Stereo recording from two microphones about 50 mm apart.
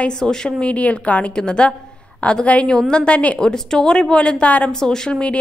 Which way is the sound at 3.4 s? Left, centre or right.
Centre.